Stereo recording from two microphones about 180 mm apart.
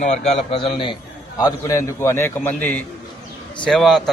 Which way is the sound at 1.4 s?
15° left (ahead or behind).